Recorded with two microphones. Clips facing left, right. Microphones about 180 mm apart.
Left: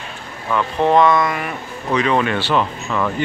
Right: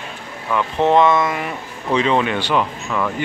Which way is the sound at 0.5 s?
20° right (ahead or behind).